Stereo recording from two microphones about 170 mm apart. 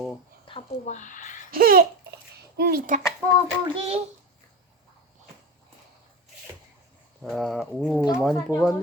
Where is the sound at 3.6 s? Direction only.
30° right (ahead or behind).